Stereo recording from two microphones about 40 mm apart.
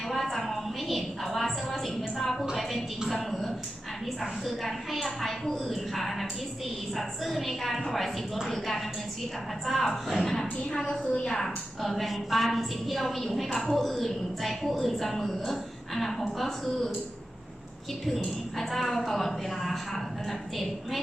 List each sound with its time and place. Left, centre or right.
0.1 s a sound: centre
3.1 s a woman's voice: centre
18.5 s a woman's voice: centre